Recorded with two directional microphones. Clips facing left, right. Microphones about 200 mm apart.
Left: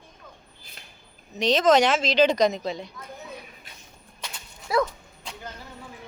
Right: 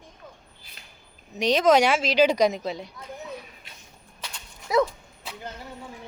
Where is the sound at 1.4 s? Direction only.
10° right (ahead or behind).